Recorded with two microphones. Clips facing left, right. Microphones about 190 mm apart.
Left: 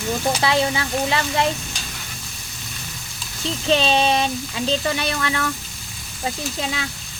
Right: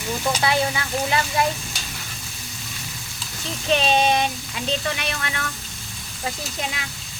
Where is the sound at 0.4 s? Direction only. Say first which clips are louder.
Left 2 dB; 30° left (ahead or behind).